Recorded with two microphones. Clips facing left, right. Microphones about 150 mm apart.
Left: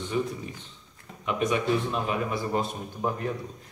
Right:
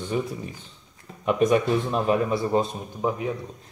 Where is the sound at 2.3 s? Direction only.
20° right (ahead or behind).